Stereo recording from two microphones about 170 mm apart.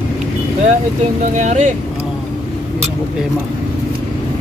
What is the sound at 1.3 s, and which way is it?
Speech, 45° right (ahead or behind).